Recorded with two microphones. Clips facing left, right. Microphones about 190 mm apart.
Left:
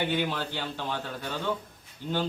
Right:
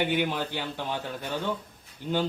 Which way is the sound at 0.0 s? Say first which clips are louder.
Right 2 dB; 15° right (ahead or behind).